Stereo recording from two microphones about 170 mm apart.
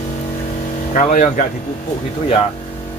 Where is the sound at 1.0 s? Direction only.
45° left (ahead or behind).